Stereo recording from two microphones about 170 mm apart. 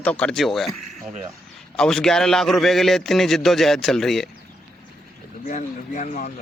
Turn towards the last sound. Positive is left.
turn(degrees=50)  # may be behind; listen again after turning